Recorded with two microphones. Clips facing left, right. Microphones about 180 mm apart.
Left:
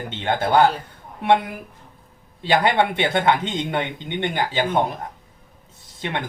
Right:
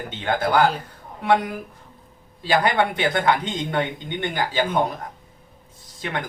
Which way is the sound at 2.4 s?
25° left (ahead or behind).